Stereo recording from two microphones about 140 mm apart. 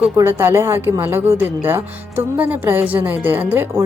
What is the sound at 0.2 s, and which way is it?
A woman's voice, 15° right (ahead or behind).